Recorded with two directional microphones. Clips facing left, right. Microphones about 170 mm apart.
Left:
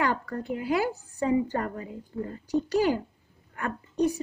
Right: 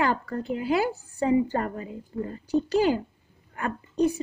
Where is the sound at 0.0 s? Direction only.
25° right (ahead or behind).